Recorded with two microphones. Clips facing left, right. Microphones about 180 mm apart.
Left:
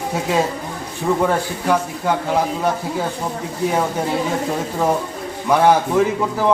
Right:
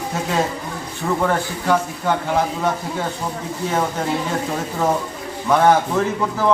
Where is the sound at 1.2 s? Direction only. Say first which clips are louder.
Left 2 dB; 10° left (ahead or behind).